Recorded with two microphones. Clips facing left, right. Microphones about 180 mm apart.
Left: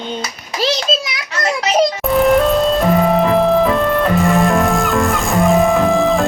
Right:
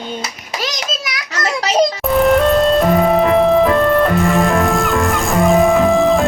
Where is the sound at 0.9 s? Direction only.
25° left (ahead or behind).